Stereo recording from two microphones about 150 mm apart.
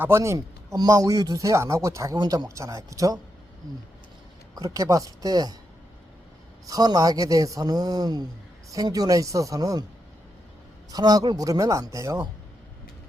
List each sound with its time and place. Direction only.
0.0 s speech: 20° right (ahead or behind)
4.5 s speech: 20° right (ahead or behind)
6.7 s speech: 25° right (ahead or behind)
10.9 s speech: 25° right (ahead or behind)